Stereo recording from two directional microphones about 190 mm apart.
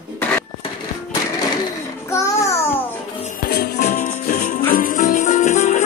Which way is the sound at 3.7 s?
40° left (ahead or behind).